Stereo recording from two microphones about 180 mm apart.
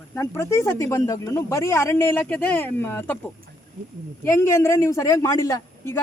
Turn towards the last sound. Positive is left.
turn(degrees=15)  # may be behind; listen again after turning